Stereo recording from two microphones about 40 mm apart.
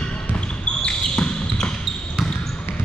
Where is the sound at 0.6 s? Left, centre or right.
Left.